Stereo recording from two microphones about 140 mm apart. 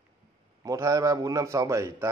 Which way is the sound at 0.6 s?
25° right (ahead or behind).